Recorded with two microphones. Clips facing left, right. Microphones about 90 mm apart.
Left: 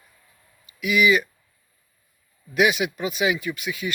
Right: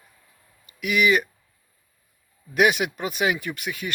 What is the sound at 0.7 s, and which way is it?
Speech, 50° right (ahead or behind).